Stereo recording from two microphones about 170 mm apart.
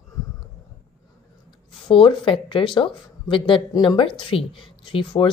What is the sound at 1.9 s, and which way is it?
A woman's voice, 30° left (ahead or behind).